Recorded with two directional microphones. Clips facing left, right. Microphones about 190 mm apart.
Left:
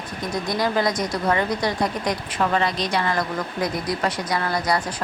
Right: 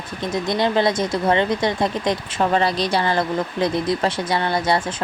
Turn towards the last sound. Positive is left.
turn(degrees=-25)  # may be behind; listen again after turning